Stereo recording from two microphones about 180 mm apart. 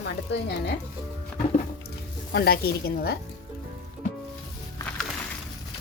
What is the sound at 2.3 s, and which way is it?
Speech, 60° left (ahead or behind).